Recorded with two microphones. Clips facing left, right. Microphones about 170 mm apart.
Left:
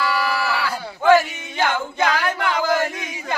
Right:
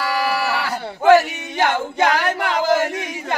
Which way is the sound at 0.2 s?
50° right (ahead or behind).